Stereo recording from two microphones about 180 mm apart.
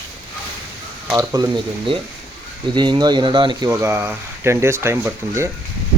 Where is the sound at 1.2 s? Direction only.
20° right (ahead or behind).